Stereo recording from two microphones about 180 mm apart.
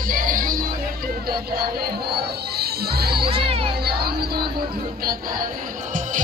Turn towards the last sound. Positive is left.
turn(degrees=-60)  # may be behind; listen again after turning